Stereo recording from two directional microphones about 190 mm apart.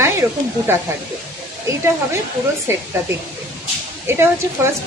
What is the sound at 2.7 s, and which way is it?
Speech, 15° right (ahead or behind).